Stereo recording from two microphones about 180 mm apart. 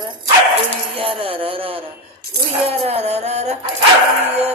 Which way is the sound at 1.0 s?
30° right (ahead or behind).